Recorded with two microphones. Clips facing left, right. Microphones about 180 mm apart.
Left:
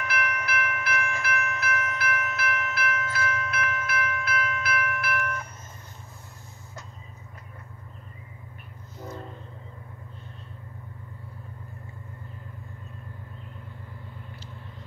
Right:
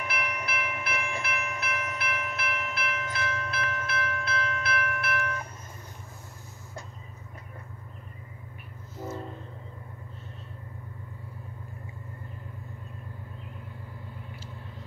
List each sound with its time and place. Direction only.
0.0 s train: 25° right (ahead or behind)
8.9 s train: 5° right (ahead or behind)